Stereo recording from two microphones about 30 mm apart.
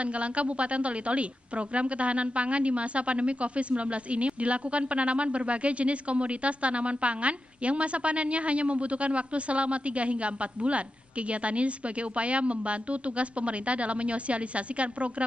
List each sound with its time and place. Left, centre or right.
0.0 s a woman's voice: right